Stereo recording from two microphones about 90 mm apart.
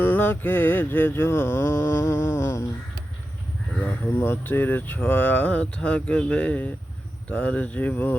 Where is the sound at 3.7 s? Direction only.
25° left (ahead or behind).